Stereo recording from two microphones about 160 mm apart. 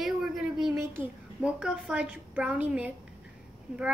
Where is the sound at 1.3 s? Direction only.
5° right (ahead or behind).